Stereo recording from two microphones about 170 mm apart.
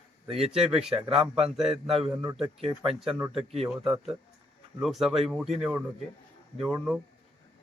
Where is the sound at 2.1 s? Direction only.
15° right (ahead or behind).